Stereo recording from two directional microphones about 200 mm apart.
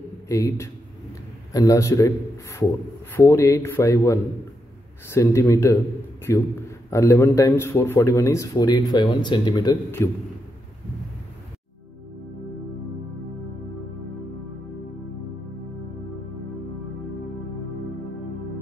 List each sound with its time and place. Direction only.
0.3 s speech: 15° left (ahead or behind)